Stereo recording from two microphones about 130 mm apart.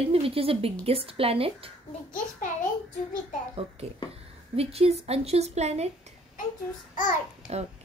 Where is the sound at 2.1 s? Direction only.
90° left.